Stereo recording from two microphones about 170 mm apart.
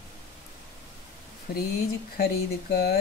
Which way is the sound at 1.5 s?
65° left (ahead or behind).